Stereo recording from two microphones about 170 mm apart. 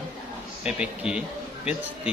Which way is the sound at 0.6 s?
5° right (ahead or behind).